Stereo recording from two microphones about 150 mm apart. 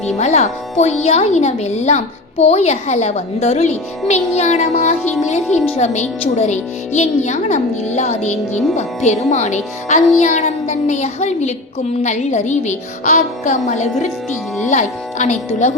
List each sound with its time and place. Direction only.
0.2 s speech: 50° left (ahead or behind)